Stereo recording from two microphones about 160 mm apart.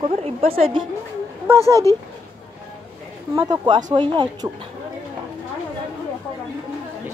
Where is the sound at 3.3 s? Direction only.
25° right (ahead or behind).